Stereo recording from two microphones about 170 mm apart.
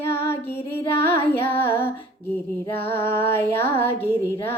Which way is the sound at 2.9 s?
15° left (ahead or behind).